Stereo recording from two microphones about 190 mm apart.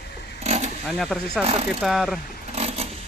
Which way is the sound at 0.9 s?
Centre (ahead or behind).